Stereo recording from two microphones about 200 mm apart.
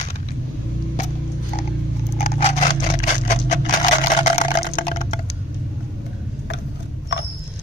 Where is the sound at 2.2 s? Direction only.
35° left (ahead or behind).